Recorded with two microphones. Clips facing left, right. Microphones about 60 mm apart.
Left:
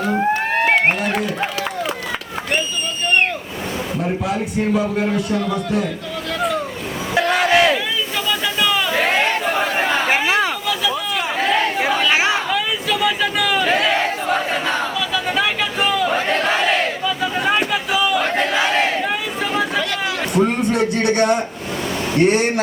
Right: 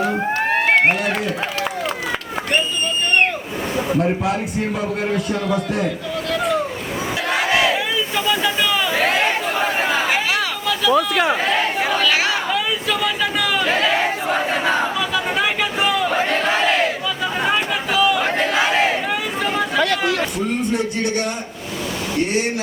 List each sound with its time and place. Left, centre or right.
0.0 s a sound: centre
5.1 s a man's voice: centre
7.3 s crowd: centre
9.5 s chatter: centre
10.9 s a sound: right
11.4 s chatter: centre
11.8 s crowd: centre
12.1 s chatter: left
12.5 s crowd: centre
16.1 s battle cry: centre
17.5 s crowd: centre
20.3 s speech: left